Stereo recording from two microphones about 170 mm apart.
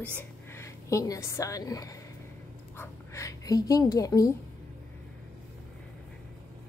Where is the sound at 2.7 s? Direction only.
20° left (ahead or behind).